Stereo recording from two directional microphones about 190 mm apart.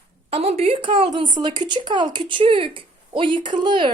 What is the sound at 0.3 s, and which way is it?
Speech, 30° right (ahead or behind).